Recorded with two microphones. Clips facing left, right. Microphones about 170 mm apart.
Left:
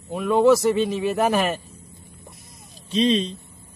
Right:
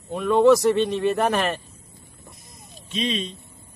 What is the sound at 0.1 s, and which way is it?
Speech, centre (ahead or behind).